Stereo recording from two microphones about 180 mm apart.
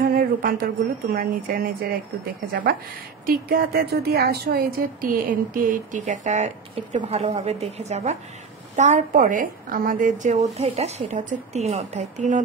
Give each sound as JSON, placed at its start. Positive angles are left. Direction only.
{"t": 0.0, "sound": "a sound", "side_deg": -60}
{"t": 1.1, "sound": "speech", "side_deg": -50}
{"t": 3.3, "sound": "a woman's voice", "side_deg": -55}